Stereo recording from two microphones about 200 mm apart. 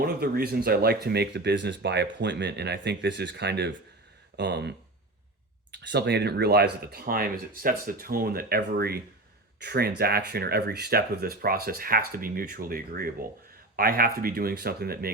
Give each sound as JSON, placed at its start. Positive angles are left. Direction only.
{"t": 0.0, "sound": "speech", "side_deg": -50}
{"t": 5.8, "sound": "speech", "side_deg": -60}